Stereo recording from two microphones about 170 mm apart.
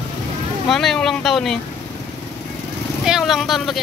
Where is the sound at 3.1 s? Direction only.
Centre (ahead or behind).